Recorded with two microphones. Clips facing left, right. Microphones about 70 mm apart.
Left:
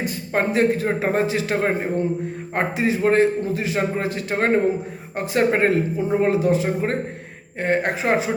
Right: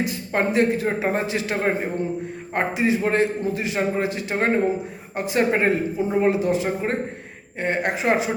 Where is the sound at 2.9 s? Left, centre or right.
Left.